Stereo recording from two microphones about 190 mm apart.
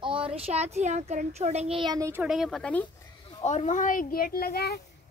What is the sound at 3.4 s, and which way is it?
Speech, 40° left (ahead or behind).